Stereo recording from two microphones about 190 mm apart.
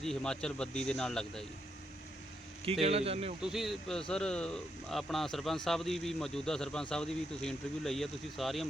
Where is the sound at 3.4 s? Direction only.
Centre (ahead or behind).